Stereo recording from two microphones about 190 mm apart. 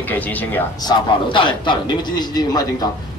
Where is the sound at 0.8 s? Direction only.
25° left (ahead or behind).